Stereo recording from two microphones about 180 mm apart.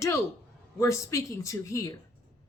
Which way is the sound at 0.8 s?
15° left (ahead or behind).